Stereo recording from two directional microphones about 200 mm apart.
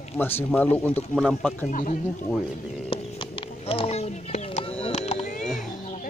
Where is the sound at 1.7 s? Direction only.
40° left (ahead or behind).